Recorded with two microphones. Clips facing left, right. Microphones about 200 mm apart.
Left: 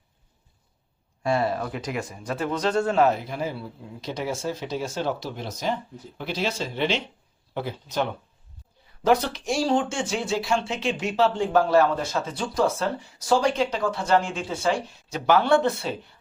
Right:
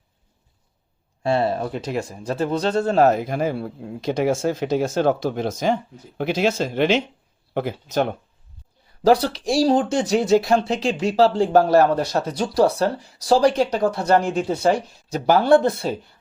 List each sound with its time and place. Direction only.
1.2 s speech: 25° right (ahead or behind); by 8.0 s 45° right (ahead or behind)
9.0 s speech: 35° right (ahead or behind)